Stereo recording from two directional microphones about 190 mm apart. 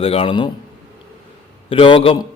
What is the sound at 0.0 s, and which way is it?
Speech, 30° left (ahead or behind).